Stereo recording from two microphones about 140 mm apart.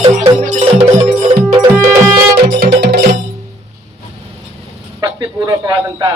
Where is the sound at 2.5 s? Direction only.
90° right.